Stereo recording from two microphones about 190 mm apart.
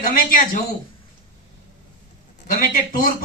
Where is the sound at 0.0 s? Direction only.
45° left (ahead or behind).